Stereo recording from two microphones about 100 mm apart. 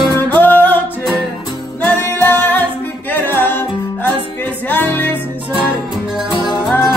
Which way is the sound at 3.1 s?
20° left (ahead or behind).